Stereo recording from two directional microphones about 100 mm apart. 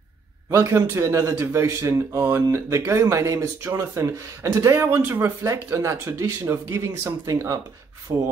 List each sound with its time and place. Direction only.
0.5 s speech: 30° right (ahead or behind)